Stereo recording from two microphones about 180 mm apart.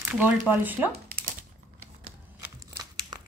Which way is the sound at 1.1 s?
50° right (ahead or behind).